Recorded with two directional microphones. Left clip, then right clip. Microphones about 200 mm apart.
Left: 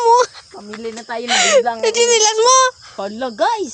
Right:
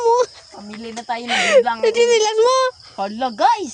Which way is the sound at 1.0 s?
35° right (ahead or behind).